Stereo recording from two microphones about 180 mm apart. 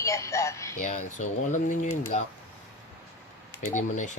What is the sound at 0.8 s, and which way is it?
Speech, 40° left (ahead or behind).